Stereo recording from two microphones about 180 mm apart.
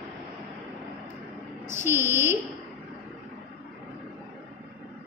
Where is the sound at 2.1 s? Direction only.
15° right (ahead or behind).